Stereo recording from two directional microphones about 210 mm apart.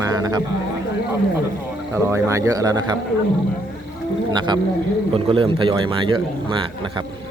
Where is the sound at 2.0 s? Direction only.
15° right (ahead or behind).